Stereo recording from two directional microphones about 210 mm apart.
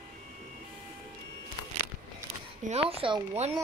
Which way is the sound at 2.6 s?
30° right (ahead or behind).